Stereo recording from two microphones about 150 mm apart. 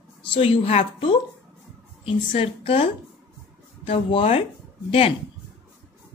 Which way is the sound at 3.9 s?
40° left (ahead or behind).